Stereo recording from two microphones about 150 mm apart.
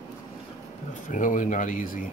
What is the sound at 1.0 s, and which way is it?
Speech, 60° left (ahead or behind).